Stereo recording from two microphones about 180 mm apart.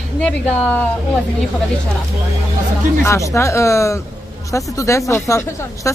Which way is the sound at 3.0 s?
15° left (ahead or behind).